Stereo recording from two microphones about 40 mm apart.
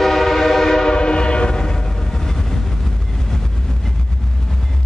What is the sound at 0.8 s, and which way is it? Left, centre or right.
Train, left.